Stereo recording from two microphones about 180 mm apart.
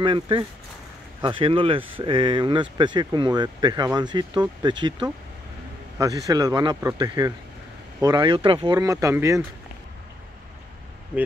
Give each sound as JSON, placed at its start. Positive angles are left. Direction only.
{"t": 0.0, "sound": "speech", "side_deg": -25}
{"t": 8.7, "sound": "speech", "side_deg": -15}